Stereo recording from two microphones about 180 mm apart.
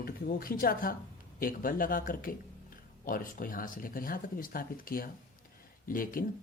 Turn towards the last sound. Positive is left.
turn(degrees=50)  # may be behind; listen again after turning